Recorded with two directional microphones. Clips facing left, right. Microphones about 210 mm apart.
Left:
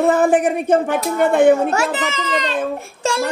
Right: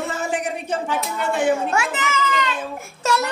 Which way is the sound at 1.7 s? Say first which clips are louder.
Left 4 dB; 40° left (ahead or behind).